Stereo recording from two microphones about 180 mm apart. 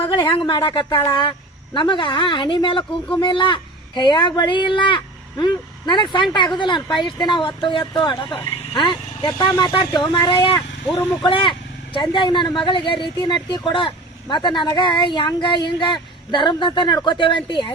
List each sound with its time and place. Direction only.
0.1 s speech: 25° left (ahead or behind)
10.9 s speech: 15° left (ahead or behind)
11.3 s speech: 30° left (ahead or behind)